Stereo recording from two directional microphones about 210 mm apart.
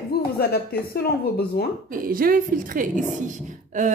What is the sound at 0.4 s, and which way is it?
A woman's voice, 45° left (ahead or behind).